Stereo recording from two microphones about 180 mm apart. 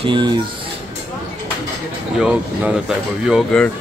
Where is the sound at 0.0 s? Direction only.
25° right (ahead or behind).